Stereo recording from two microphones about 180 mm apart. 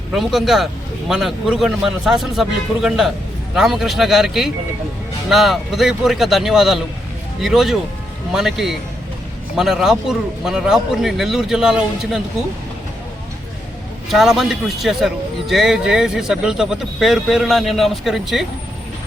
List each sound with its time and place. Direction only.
0.1 s a man's voice: centre (ahead or behind)
14.1 s a man's voice: centre (ahead or behind)